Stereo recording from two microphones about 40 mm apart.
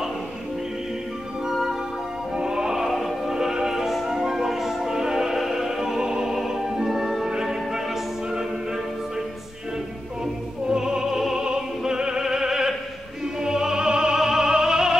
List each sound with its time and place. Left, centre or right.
1.5 s music: centre
2.3 s music: centre
2.9 s music: centre
3.3 s music: centre
10.7 s music: centre
11.4 s opera: centre
13.4 s music: centre